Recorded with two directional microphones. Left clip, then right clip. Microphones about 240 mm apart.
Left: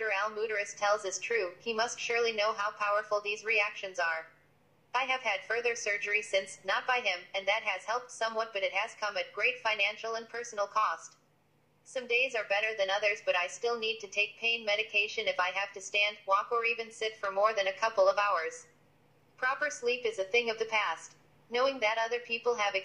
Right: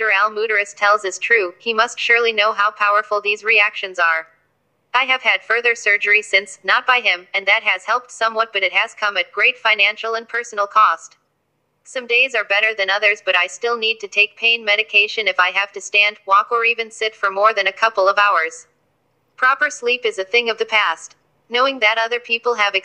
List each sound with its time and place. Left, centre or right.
0.0 s a woman's voice: right